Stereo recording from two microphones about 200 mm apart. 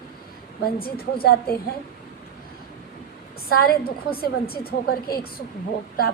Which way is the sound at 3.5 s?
50° left (ahead or behind).